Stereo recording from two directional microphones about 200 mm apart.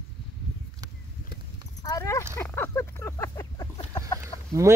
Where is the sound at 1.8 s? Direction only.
15° left (ahead or behind).